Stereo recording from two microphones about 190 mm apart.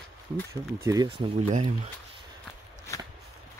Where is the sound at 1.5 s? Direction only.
35° right (ahead or behind).